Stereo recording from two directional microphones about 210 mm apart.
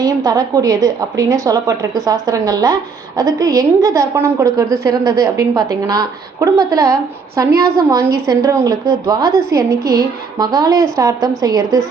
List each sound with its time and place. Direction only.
0.0 s a woman's voice: 15° right (ahead or behind)